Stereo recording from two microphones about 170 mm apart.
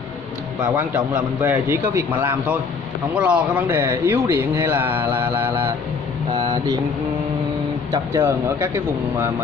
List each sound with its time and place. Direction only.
0.7 s speech: 15° right (ahead or behind)
6.3 s speech: 20° right (ahead or behind)
7.9 s speech: 15° right (ahead or behind)